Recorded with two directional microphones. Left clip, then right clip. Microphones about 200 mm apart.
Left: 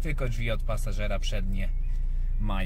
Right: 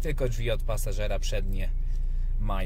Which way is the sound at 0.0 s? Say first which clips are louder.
Right 3 dB; 15° right (ahead or behind).